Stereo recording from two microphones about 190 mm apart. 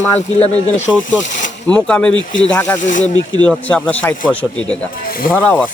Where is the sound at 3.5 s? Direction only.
5° left (ahead or behind).